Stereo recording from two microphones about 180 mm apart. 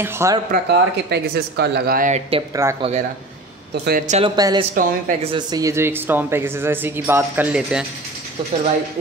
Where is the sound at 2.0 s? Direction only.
40° right (ahead or behind).